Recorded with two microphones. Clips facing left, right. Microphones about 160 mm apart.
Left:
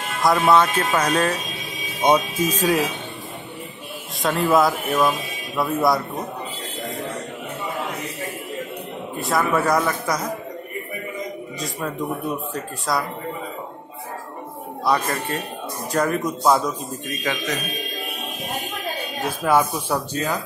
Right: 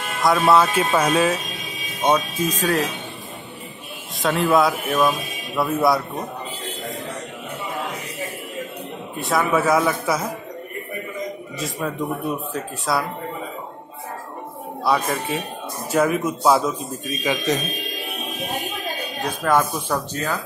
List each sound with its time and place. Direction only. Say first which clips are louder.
0.2 s a man's voice: even; centre (ahead or behind)
2.0 s speech: left 1 dB; 10° left (ahead or behind)
4.2 s a man's voice: even; centre (ahead or behind)
9.1 s a man's voice: right 1 dB; centre (ahead or behind)
12.5 s a man's voice: right 1 dB; centre (ahead or behind)
14.9 s a man's voice: right 1 dB; centre (ahead or behind)
17.2 s a man's voice: right 5 dB; 15° right (ahead or behind)
19.4 s speech: left 1 dB; 10° left (ahead or behind)